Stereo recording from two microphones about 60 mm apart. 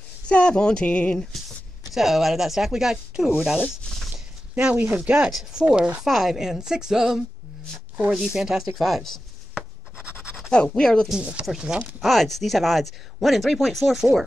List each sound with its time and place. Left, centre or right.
0.3 s speech: centre
1.9 s speech: centre
4.1 s a sound: centre
4.7 s speech: right
5.3 s a woman's voice: centre
9.5 s a sound: centre
10.5 s speech: centre
11.1 s a woman's voice: centre
12.0 s speech: centre